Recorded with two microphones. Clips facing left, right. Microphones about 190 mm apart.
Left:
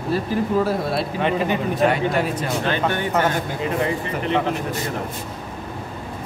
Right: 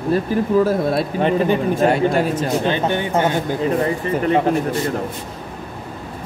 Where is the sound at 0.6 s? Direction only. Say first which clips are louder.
Right 4 dB; 45° right (ahead or behind).